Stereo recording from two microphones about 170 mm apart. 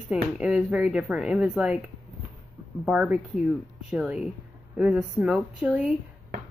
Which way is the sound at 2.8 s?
5° right (ahead or behind).